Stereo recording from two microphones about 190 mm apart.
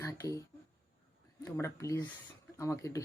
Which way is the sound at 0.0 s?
15° left (ahead or behind).